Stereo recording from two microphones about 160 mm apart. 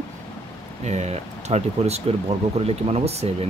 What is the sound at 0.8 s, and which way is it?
Speech, 45° right (ahead or behind).